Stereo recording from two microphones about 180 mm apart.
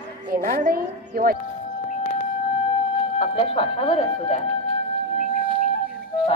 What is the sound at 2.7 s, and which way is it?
Speech, 30° left (ahead or behind).